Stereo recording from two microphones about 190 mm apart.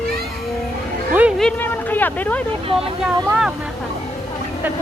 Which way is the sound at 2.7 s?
20° right (ahead or behind).